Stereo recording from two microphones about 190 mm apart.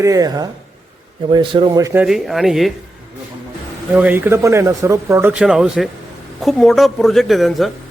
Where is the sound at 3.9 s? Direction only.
10° right (ahead or behind).